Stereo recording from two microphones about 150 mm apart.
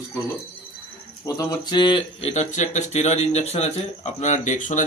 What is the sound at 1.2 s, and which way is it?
Speech, 25° left (ahead or behind).